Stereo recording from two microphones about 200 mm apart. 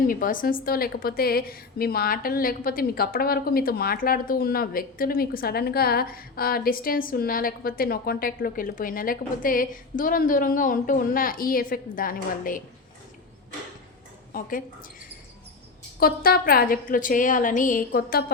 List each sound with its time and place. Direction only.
0.1 s a woman's voice: 45° left (ahead or behind)
14.3 s a woman's voice: 45° left (ahead or behind)
16.0 s a woman's voice: 50° left (ahead or behind)